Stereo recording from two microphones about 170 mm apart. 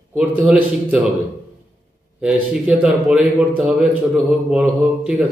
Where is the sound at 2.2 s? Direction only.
5° right (ahead or behind).